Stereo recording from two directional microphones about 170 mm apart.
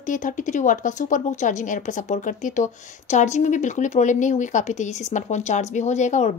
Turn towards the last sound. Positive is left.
turn(degrees=45)  # may be behind; listen again after turning